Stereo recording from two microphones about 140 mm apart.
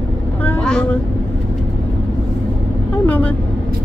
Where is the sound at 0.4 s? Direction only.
10° left (ahead or behind).